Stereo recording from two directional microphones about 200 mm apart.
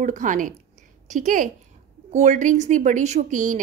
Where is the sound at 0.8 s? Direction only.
40° right (ahead or behind).